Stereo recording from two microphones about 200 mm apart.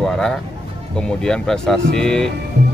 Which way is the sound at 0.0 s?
Centre (ahead or behind).